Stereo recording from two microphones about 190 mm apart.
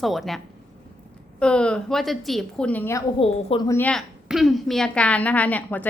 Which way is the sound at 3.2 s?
30° left (ahead or behind).